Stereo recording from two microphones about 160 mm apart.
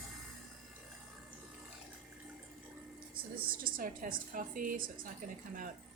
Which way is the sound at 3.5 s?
65° right (ahead or behind).